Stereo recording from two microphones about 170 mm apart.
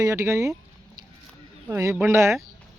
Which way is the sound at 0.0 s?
15° right (ahead or behind).